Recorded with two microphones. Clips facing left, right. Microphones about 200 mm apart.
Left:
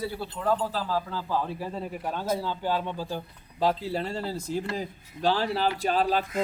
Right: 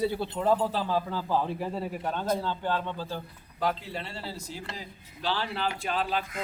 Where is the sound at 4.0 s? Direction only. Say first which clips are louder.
Left 7 dB; 45° left (ahead or behind).